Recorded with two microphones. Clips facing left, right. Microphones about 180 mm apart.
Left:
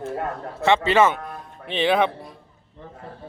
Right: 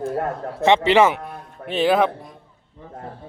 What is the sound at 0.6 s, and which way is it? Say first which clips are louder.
Speech: right 3 dB; 15° right (ahead or behind).